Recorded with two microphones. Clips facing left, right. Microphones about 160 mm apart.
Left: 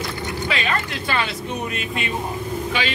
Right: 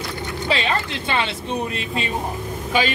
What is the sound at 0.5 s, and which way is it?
Speech, 30° right (ahead or behind).